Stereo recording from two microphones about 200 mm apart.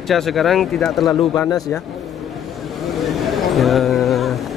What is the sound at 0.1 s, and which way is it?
Speech, centre (ahead or behind).